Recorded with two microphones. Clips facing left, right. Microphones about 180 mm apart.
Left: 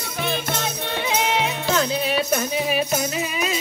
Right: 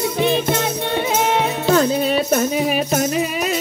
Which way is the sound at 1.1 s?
45° right (ahead or behind).